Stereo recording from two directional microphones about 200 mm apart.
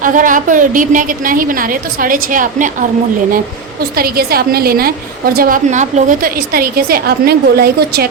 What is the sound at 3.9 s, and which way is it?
A woman's voice, 50° right (ahead or behind).